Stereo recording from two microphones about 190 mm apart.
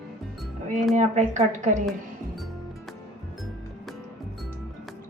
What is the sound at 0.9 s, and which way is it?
Speech, 40° right (ahead or behind).